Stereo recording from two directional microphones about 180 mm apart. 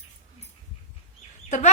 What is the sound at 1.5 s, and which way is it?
Speech, 40° left (ahead or behind).